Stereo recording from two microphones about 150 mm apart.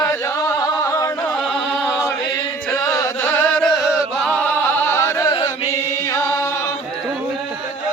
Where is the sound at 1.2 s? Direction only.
Centre (ahead or behind).